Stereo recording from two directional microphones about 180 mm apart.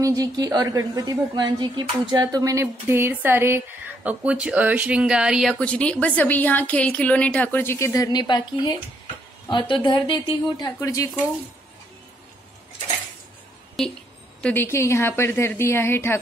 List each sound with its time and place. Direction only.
0.0 s a woman's voice: 20° right (ahead or behind); by 11.2 s 15° left (ahead or behind)
13.8 s a woman's voice: centre (ahead or behind)